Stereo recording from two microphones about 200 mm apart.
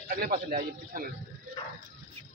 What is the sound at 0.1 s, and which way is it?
Speech, 45° right (ahead or behind).